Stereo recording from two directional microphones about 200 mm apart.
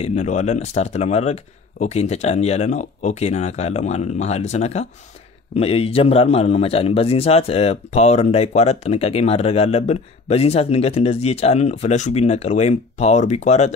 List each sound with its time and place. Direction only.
0.0 s a man's voice: 35° left (ahead or behind)